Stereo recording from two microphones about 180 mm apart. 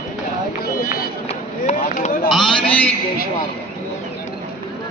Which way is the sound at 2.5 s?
25° left (ahead or behind).